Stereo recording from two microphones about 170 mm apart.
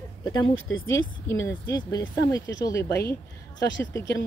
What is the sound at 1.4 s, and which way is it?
Speech, 20° left (ahead or behind).